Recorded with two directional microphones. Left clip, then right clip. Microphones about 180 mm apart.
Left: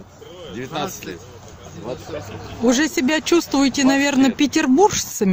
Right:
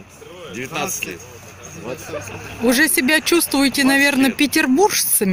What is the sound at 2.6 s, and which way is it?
Speech, 10° left (ahead or behind).